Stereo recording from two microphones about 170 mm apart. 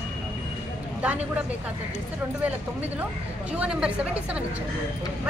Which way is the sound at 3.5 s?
5° right (ahead or behind).